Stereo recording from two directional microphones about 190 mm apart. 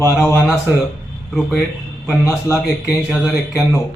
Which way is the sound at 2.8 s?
5° right (ahead or behind).